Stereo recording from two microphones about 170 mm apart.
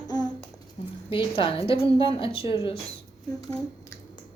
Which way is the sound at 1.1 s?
30° left (ahead or behind).